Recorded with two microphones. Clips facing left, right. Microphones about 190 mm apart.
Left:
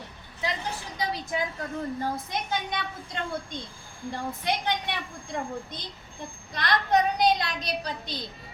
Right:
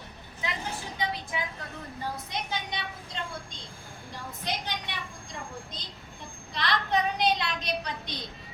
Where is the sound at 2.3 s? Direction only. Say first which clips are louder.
Left 4 dB; 50° left (ahead or behind).